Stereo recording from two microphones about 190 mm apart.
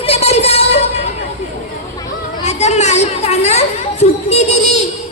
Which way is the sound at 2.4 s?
35° left (ahead or behind).